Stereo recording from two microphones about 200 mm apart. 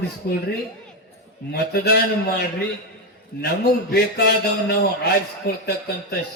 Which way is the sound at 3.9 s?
55° left (ahead or behind).